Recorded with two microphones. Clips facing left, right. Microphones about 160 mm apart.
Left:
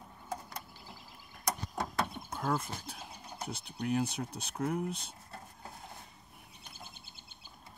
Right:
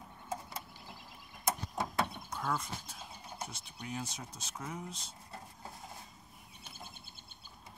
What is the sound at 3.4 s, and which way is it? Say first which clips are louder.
Speech: left 9 dB; 60° left (ahead or behind).